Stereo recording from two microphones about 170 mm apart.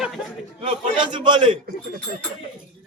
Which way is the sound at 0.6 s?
30° right (ahead or behind).